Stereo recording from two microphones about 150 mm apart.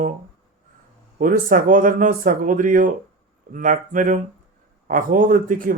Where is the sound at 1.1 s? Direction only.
65° right (ahead or behind).